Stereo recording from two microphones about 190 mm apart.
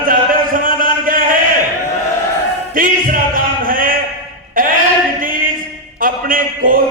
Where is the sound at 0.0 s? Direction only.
45° right (ahead or behind).